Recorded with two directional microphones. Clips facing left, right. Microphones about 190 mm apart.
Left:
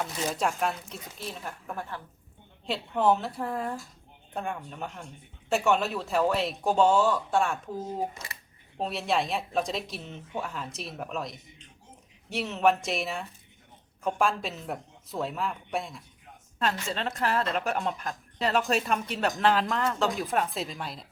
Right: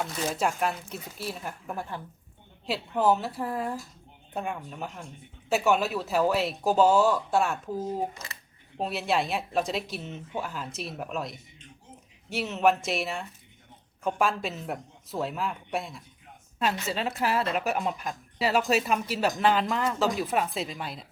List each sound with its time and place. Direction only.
0.0 s speech: centre (ahead or behind)